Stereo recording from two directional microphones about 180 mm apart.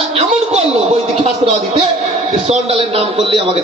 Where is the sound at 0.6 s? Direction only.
35° right (ahead or behind).